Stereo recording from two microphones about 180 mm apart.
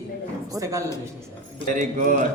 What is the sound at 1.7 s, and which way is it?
Speech, 45° right (ahead or behind).